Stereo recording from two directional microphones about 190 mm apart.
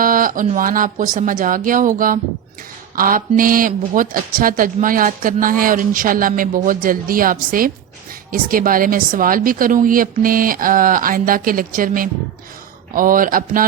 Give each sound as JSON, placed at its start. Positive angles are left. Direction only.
{"t": 0.0, "sound": "speech", "side_deg": -45}